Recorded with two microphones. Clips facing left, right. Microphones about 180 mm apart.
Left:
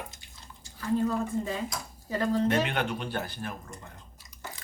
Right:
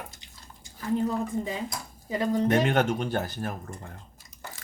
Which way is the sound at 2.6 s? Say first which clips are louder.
Right 6 dB; 45° right (ahead or behind).